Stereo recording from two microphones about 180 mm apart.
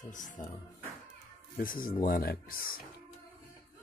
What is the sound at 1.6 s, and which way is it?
Speech, 50° left (ahead or behind).